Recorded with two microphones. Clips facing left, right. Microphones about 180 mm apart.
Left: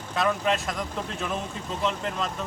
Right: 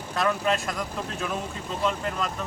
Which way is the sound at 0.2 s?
Centre (ahead or behind).